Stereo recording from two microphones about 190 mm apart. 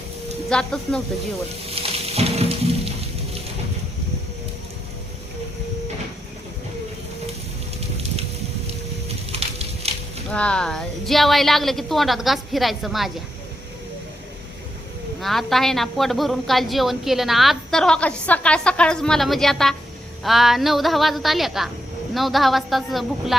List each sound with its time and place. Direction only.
0.5 s a woman's voice: 5° left (ahead or behind)
1.7 s music: 30° right (ahead or behind)
8.6 s a sound: 30° right (ahead or behind)
10.3 s a woman's voice: 5° left (ahead or behind)
15.2 s a woman's voice: centre (ahead or behind)